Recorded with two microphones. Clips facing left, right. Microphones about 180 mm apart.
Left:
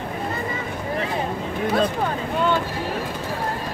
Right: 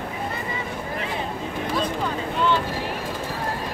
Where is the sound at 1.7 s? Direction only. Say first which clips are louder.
Left 3 dB; 50° left (ahead or behind).